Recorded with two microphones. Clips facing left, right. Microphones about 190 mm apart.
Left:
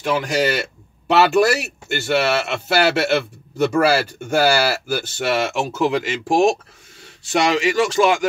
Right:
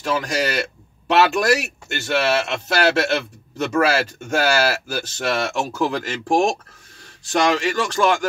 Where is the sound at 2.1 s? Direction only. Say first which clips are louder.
Even; 5° left (ahead or behind).